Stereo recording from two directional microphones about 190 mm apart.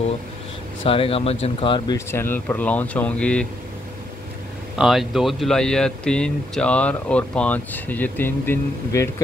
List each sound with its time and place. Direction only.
0.8 s speech: 30° left (ahead or behind)
2.0 s speech: 15° left (ahead or behind)
4.7 s speech: centre (ahead or behind)